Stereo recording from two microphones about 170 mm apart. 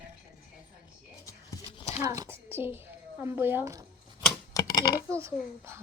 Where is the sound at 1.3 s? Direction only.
20° left (ahead or behind).